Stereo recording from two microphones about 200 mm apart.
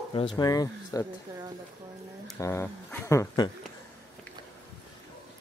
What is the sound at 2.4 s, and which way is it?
Speech, 15° left (ahead or behind).